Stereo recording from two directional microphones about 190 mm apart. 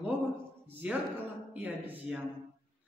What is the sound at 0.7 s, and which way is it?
A man's voice, 10° right (ahead or behind).